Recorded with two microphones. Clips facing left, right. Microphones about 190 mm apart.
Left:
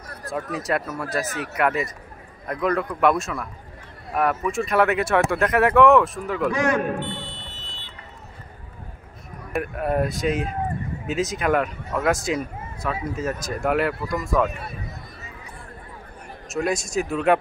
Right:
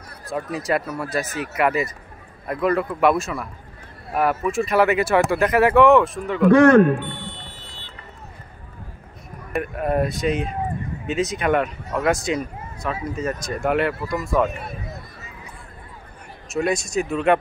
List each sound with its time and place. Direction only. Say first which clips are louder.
0.3 s speech: right 2 dB; centre (ahead or behind)
6.5 s speech: right 13 dB; 60° right (ahead or behind)
9.5 s speech: right 1 dB; centre (ahead or behind)
16.4 s speech: right 2 dB; centre (ahead or behind)